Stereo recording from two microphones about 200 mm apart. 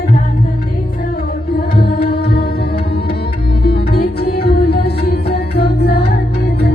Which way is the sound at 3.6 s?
50° left (ahead or behind).